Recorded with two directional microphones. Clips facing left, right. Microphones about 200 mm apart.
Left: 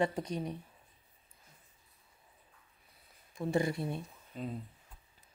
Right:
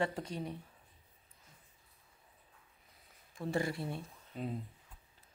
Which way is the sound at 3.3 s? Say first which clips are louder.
Left 4 dB; 20° left (ahead or behind).